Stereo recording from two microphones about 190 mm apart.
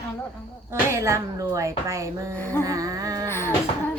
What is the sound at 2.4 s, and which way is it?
Music, 10° left (ahead or behind).